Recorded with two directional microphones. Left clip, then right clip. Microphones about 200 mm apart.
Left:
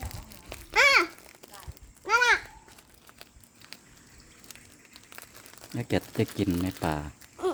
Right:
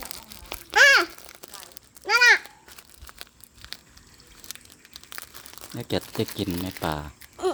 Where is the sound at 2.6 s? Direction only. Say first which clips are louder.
Right 6 dB; 40° right (ahead or behind).